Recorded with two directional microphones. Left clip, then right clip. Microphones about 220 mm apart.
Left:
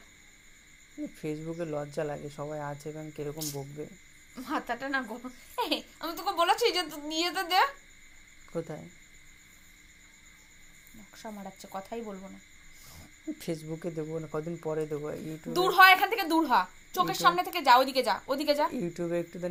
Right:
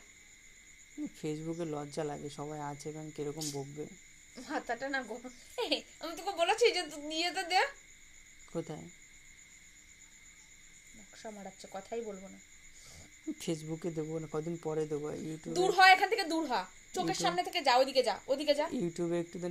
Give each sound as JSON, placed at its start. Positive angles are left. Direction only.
{"t": 1.2, "sound": "speech", "side_deg": -45}
{"t": 4.4, "sound": "a woman's voice", "side_deg": -15}
{"t": 8.5, "sound": "speech", "side_deg": -45}
{"t": 11.2, "sound": "a woman's voice", "side_deg": -10}
{"t": 13.4, "sound": "speech", "side_deg": -45}
{"t": 15.5, "sound": "a woman's voice", "side_deg": -15}
{"t": 18.7, "sound": "speech", "side_deg": -45}